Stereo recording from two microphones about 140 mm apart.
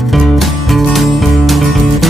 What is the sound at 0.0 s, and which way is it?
Music, centre (ahead or behind).